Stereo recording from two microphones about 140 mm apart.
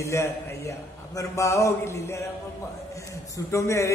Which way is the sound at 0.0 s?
20° left (ahead or behind).